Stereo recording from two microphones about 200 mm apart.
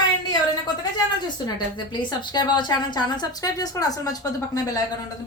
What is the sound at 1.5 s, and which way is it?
A woman's voice, 20° left (ahead or behind).